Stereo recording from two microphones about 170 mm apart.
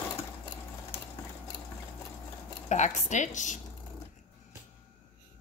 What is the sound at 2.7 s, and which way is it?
Speech, 45° left (ahead or behind).